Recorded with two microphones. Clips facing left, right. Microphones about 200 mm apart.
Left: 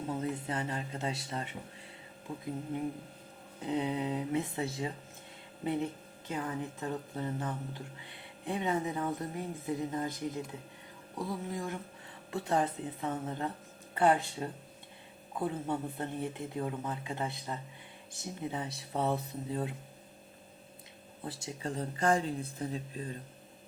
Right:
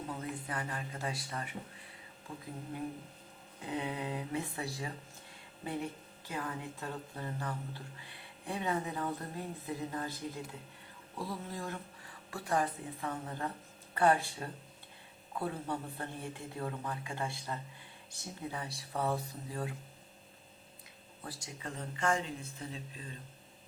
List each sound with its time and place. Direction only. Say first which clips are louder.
0.1 s speech: left 8 dB; 25° left (ahead or behind)
3.7 s speech: left 5 dB; 20° left (ahead or behind)
21.2 s speech: left 6 dB; 30° left (ahead or behind)